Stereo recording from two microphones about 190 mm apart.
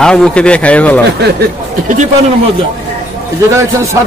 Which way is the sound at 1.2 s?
55° right (ahead or behind).